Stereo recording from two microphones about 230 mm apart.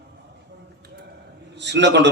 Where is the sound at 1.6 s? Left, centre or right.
Right.